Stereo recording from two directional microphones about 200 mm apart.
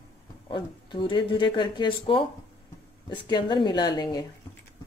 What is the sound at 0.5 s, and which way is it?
Speech, 20° left (ahead or behind).